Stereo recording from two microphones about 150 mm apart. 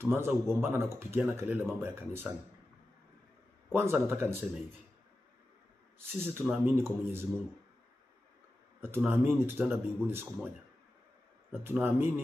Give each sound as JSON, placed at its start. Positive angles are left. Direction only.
{"t": 0.0, "sound": "speech", "side_deg": -15}
{"t": 3.7, "sound": "speech", "side_deg": -15}
{"t": 5.9, "sound": "speech", "side_deg": -15}
{"t": 8.8, "sound": "speech", "side_deg": -15}
{"t": 11.6, "sound": "speech", "side_deg": -15}